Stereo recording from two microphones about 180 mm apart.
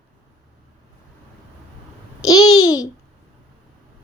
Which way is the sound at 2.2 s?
20° left (ahead or behind).